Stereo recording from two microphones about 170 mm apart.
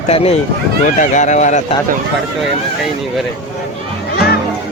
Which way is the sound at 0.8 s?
45° left (ahead or behind).